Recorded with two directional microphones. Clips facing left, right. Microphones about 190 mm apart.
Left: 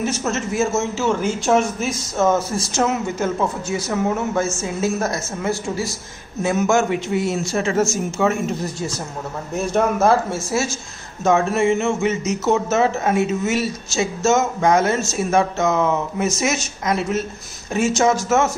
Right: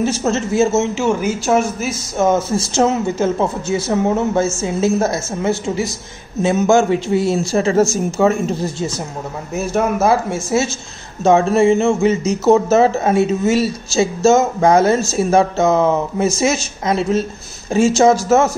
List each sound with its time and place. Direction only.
0.0 s a man's voice: 30° right (ahead or behind); by 2.2 s 5° right (ahead or behind)
2.2 s speech: 25° right (ahead or behind)
9.6 s speech: 5° right (ahead or behind)
11.2 s speech: 30° right (ahead or behind)